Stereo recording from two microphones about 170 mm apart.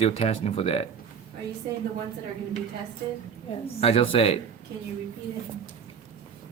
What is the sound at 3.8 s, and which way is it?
Speech, 35° left (ahead or behind).